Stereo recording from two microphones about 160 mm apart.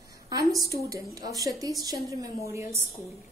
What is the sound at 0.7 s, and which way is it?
A woman's voice, 20° right (ahead or behind).